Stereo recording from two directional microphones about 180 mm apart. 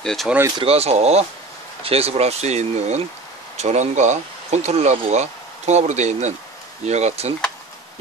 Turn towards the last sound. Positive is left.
turn(degrees=-40)  # may be behind; listen again after turning